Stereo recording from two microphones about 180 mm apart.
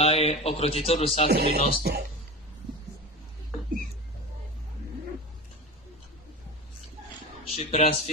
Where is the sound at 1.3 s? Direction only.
65° right (ahead or behind).